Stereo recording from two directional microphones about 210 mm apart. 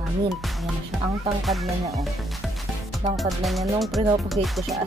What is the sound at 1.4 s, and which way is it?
Speech, centre (ahead or behind).